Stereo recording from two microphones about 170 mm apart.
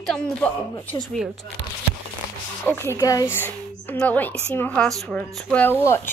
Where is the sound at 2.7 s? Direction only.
15° left (ahead or behind).